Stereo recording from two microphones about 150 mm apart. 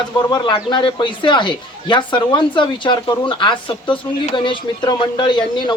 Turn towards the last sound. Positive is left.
turn(degrees=30)  # may be behind; listen again after turning